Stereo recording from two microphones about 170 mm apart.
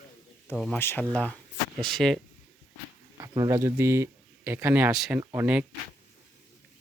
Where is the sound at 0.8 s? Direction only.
15° left (ahead or behind).